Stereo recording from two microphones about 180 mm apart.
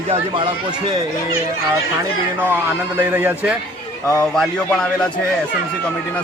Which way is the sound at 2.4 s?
10° right (ahead or behind).